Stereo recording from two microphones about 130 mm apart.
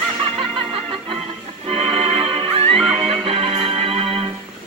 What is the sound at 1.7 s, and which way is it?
Music, 50° right (ahead or behind).